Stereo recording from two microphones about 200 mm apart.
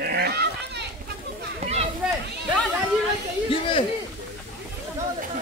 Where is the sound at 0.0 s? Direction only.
55° right (ahead or behind).